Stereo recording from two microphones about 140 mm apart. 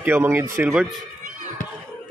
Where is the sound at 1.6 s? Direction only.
70° left (ahead or behind).